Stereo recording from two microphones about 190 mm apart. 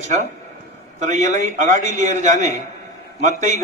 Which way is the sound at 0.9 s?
40° right (ahead or behind).